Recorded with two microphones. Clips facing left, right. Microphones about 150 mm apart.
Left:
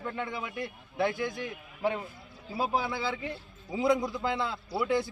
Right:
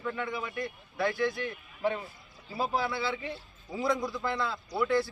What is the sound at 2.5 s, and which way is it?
A man's voice, 10° left (ahead or behind).